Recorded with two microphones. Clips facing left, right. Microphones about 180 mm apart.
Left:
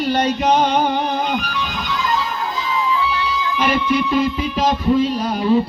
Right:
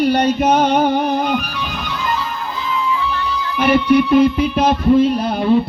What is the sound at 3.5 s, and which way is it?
Music, 60° right (ahead or behind).